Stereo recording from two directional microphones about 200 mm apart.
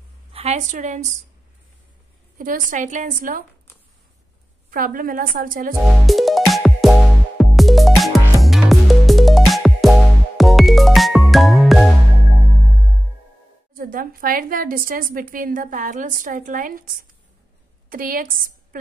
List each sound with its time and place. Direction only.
0.3 s a woman's voice: 30° right (ahead or behind)
2.3 s a woman's voice: 40° right (ahead or behind)
4.6 s a woman's voice: 45° right (ahead or behind)
6.0 s music: centre (ahead or behind)
13.7 s a woman's voice: 45° right (ahead or behind)